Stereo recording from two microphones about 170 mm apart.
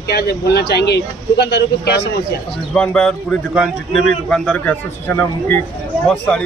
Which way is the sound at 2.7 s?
5° left (ahead or behind).